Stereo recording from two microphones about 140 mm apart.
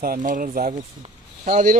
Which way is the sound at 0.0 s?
80° right.